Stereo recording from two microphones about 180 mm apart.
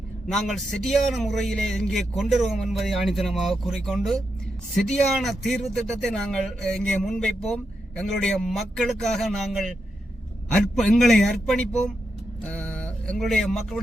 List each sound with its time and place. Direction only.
0.3 s speech: centre (ahead or behind)